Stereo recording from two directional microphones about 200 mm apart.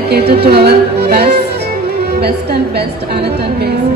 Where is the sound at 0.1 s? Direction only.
55° right (ahead or behind).